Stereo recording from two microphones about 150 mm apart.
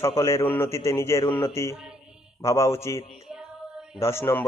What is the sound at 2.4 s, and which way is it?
A man's voice, 20° left (ahead or behind).